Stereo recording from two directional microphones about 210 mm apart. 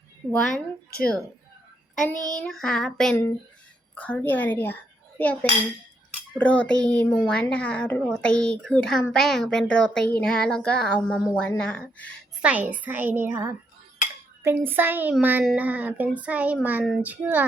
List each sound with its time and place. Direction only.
0.3 s a child's voice: 5° left (ahead or behind)
2.1 s child singing: 35° left (ahead or behind)
2.4 s a child's voice: centre (ahead or behind)
12.5 s speech: 5° right (ahead or behind)